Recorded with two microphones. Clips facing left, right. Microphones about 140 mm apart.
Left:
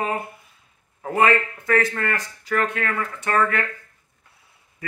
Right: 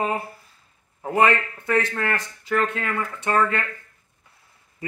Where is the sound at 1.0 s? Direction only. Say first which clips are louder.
Even; 20° right (ahead or behind).